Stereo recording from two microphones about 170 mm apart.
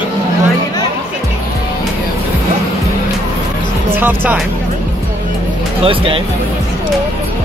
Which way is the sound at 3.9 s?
10° right (ahead or behind).